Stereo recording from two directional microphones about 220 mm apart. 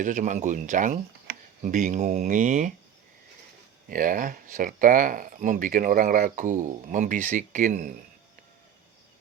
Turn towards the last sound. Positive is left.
turn(degrees=-35)  # may be behind; listen again after turning